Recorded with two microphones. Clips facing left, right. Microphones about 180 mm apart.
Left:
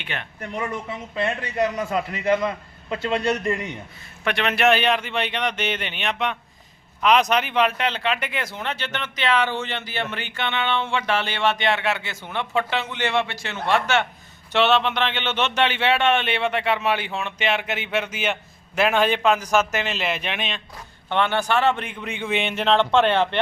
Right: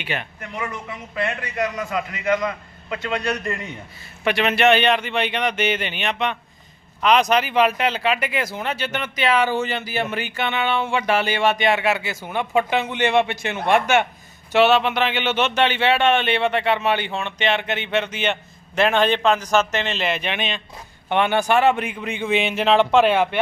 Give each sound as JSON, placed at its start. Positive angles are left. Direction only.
{"t": 0.0, "sound": "speech", "side_deg": -5}
{"t": 0.3, "sound": "a man's voice", "side_deg": 35}
{"t": 4.2, "sound": "a man's voice", "side_deg": -5}
{"t": 21.1, "sound": "speech", "side_deg": -15}